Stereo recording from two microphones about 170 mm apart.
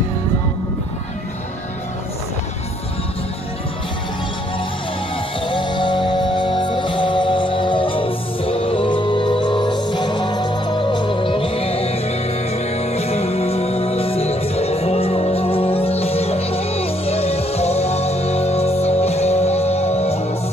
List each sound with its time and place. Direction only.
5.4 s music: 30° left (ahead or behind)